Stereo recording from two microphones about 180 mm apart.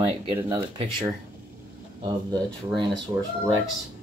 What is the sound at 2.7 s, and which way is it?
Speech, 25° right (ahead or behind).